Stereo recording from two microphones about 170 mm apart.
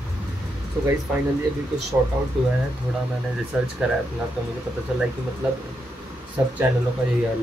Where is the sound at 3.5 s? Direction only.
5° right (ahead or behind).